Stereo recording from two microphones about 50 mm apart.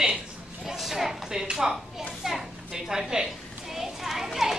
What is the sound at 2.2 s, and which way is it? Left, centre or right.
Children playing, centre.